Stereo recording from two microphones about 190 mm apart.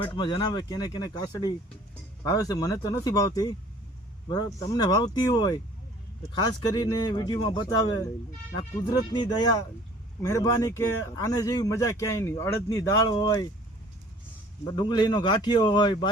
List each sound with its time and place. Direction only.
0.0 s speech: 25° left (ahead or behind)
14.6 s speech: 25° left (ahead or behind)